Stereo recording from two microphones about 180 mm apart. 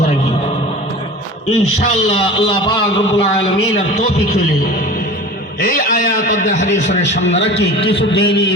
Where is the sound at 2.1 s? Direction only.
30° left (ahead or behind).